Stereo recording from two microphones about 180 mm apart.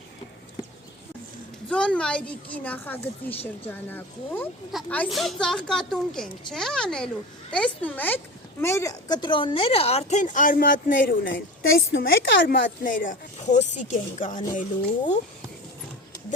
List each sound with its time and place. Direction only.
1.7 s a woman's voice: 5° left (ahead or behind); by 11.3 s 50° left (ahead or behind)
11.9 s a woman's voice: 90° left
12.8 s speech: 50° left (ahead or behind)